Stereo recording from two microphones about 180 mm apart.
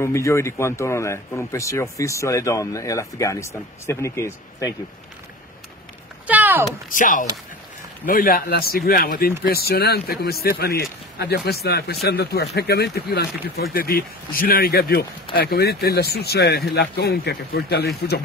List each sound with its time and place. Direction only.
0.0 s speech: 15° left (ahead or behind)
6.2 s a sound: 10° right (ahead or behind)
6.9 s speech: 50° left (ahead or behind); by 18.2 s 65° left (ahead or behind)